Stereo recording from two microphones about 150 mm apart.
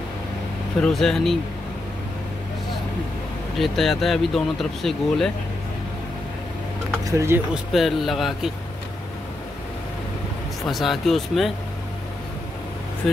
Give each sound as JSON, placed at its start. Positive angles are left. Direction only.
{"t": 0.7, "sound": "speech", "side_deg": 5}
{"t": 3.5, "sound": "speech", "side_deg": 0}
{"t": 7.1, "sound": "speech", "side_deg": -20}
{"t": 7.5, "sound": "speech", "side_deg": 0}
{"t": 10.7, "sound": "speech", "side_deg": 0}
{"t": 13.0, "sound": "speech", "side_deg": 0}